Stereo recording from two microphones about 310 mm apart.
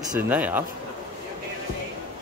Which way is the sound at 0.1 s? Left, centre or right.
Centre.